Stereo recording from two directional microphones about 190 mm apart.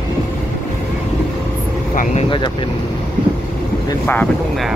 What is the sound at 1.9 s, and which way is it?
Speech, 40° left (ahead or behind).